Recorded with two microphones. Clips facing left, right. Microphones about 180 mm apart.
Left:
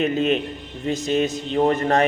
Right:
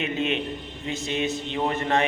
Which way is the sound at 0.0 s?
40° left (ahead or behind).